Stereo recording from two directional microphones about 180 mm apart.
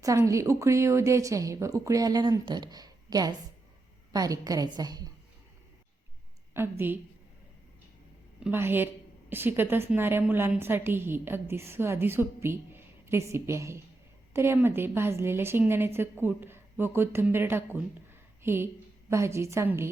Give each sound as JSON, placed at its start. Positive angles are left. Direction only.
{"t": 0.0, "sound": "a woman's voice", "side_deg": -15}
{"t": 6.5, "sound": "a woman's voice", "side_deg": -15}
{"t": 8.4, "sound": "a woman's voice", "side_deg": -10}